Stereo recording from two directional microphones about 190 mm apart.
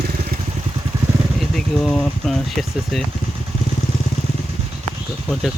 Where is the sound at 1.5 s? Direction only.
5° left (ahead or behind).